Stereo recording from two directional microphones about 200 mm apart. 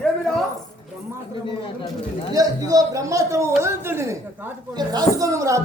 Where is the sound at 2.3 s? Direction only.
15° right (ahead or behind).